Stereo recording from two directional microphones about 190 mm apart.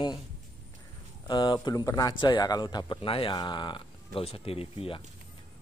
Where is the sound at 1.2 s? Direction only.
25° left (ahead or behind).